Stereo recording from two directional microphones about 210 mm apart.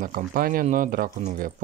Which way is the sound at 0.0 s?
45° right (ahead or behind).